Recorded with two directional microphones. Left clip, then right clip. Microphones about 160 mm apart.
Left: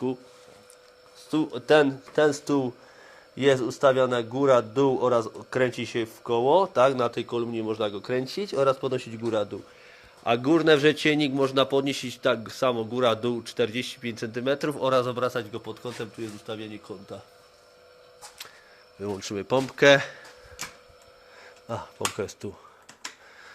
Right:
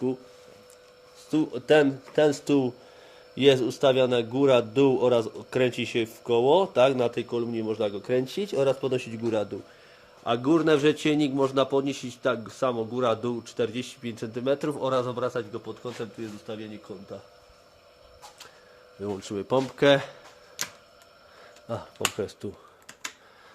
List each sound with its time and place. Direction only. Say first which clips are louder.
1.3 s a man's voice: even; 15° right (ahead or behind)
10.2 s a man's voice: left 2 dB; centre (ahead or behind); by 17.2 s 20° left (ahead or behind)
19.0 s a man's voice: left 1 dB; 5° right (ahead or behind)
22.2 s speech: even; 15° right (ahead or behind)